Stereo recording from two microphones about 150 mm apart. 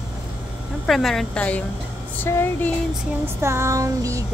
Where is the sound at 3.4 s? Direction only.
20° right (ahead or behind).